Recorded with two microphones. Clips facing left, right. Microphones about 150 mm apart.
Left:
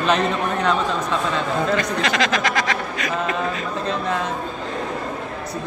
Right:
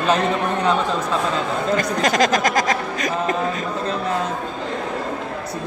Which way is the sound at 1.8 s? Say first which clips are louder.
Right 3 dB; 45° right (ahead or behind).